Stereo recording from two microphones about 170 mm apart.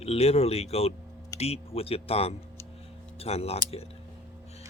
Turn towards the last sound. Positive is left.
turn(degrees=35)  # may be behind; listen again after turning